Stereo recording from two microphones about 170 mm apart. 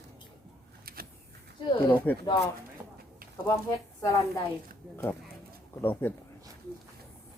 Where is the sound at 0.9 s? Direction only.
60° right (ahead or behind).